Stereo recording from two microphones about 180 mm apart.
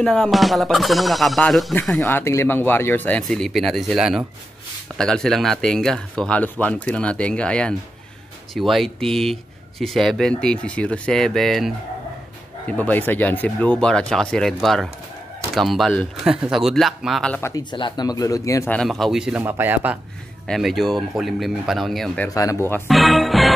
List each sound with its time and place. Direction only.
0.0 s speech: centre (ahead or behind)
18.8 s a man's voice: centre (ahead or behind)
20.4 s speech: centre (ahead or behind)
22.3 s speech: 15° left (ahead or behind)
22.8 s speech: centre (ahead or behind)